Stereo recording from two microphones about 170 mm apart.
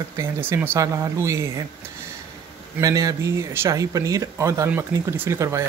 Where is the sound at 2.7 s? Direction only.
20° right (ahead or behind).